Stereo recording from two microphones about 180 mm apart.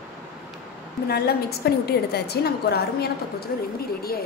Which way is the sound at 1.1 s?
60° left (ahead or behind).